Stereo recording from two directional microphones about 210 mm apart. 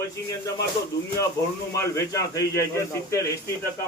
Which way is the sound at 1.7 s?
15° left (ahead or behind).